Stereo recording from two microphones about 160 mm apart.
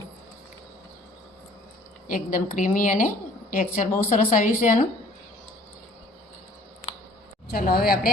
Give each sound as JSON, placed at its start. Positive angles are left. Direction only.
{"t": 2.0, "sound": "a woman's voice", "side_deg": 55}
{"t": 7.4, "sound": "a woman's voice", "side_deg": 70}